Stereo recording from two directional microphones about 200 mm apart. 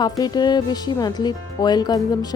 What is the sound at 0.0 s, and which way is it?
Speech, 20° left (ahead or behind).